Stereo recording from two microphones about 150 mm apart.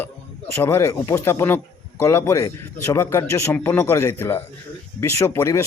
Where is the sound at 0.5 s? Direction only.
15° left (ahead or behind).